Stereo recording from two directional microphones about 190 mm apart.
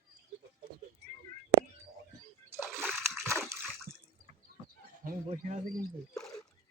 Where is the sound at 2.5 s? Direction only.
15° right (ahead or behind).